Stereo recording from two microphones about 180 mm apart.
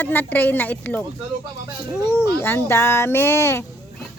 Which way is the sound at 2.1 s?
15° left (ahead or behind).